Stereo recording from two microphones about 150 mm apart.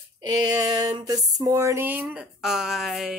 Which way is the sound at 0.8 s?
25° right (ahead or behind).